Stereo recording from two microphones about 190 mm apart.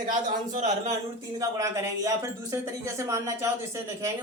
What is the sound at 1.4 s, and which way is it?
Speech, 15° right (ahead or behind).